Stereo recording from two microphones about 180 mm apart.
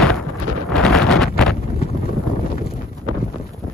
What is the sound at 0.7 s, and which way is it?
Wind noise, 5° left (ahead or behind).